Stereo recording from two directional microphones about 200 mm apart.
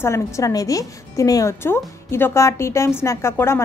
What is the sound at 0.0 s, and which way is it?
A woman's voice, 15° left (ahead or behind).